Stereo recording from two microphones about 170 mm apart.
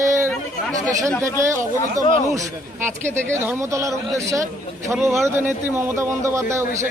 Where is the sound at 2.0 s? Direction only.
20° left (ahead or behind).